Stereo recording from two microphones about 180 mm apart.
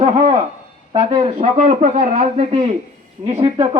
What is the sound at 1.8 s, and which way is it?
Speech, 45° right (ahead or behind).